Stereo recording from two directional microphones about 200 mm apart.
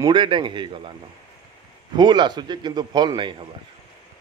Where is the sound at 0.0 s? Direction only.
25° right (ahead or behind).